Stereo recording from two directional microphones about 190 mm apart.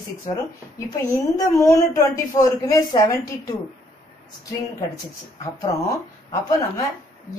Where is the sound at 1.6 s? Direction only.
15° left (ahead or behind).